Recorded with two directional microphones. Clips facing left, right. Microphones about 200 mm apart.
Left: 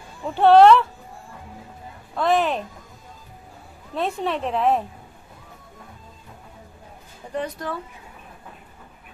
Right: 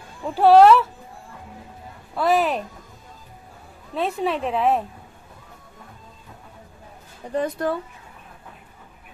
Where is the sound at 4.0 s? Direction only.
Centre (ahead or behind).